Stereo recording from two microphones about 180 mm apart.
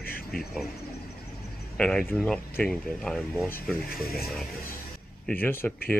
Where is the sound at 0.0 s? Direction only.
55° left (ahead or behind).